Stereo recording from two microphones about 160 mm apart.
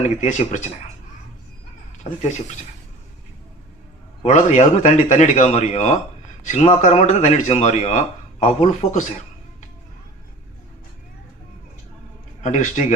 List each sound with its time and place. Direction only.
0.0 s a man's voice: 45° left (ahead or behind)
4.2 s a man's voice: 50° left (ahead or behind)
12.4 s a man's voice: 50° left (ahead or behind)